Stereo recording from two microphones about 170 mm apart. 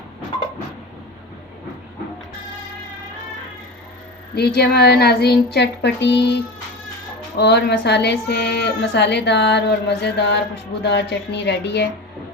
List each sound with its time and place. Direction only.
4.4 s a woman's voice: 70° left (ahead or behind)